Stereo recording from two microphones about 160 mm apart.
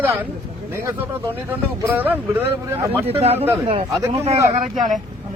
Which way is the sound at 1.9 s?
10° right (ahead or behind).